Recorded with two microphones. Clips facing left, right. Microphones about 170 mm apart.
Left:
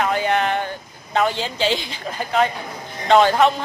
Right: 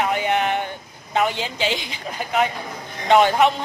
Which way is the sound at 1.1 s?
15° right (ahead or behind).